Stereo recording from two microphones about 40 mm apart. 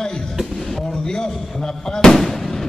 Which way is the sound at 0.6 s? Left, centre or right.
Centre.